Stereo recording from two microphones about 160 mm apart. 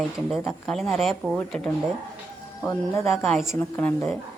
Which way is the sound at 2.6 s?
20° left (ahead or behind).